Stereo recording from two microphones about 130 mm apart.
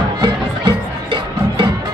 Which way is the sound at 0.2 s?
40° right (ahead or behind).